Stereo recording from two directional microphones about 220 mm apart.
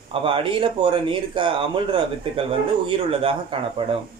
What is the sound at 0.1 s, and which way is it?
Speech, 25° right (ahead or behind).